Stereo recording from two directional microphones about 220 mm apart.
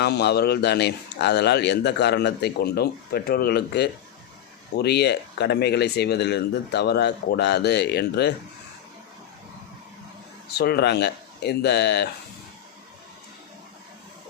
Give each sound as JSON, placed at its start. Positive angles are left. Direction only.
{"t": 0.0, "sound": "a man's voice", "side_deg": 50}
{"t": 10.6, "sound": "a man's voice", "side_deg": 45}